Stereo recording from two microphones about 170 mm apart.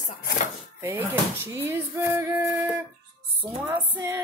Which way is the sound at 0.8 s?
15° right (ahead or behind).